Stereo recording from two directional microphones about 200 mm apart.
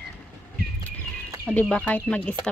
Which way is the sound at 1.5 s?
5° left (ahead or behind).